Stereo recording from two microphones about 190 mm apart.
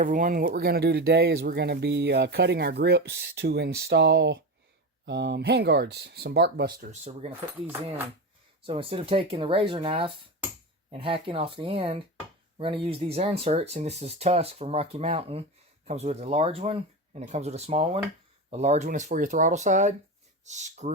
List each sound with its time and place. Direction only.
0.0 s speech: 45° right (ahead or behind)
7.0 s speech: 35° right (ahead or behind)
8.6 s speech: 30° right (ahead or behind)